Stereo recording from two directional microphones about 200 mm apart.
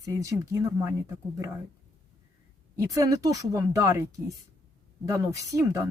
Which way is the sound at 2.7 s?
15° right (ahead or behind).